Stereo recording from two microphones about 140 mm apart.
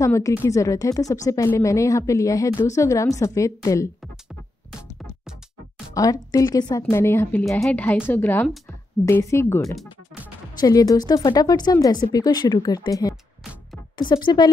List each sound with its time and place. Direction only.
0.0 s speech: 20° left (ahead or behind)
5.9 s a woman's voice: 25° left (ahead or behind)
13.4 s music: centre (ahead or behind)
13.9 s speech: 30° left (ahead or behind)